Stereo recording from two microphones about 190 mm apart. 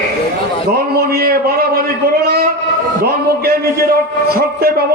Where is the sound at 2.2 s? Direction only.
55° right (ahead or behind).